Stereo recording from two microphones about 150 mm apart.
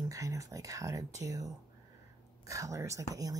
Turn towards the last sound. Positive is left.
turn(degrees=-25)  # may be behind; listen again after turning